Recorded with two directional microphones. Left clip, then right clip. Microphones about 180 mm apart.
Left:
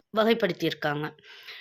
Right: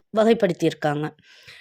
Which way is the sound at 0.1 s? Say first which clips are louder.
Right 5 dB; 45° right (ahead or behind).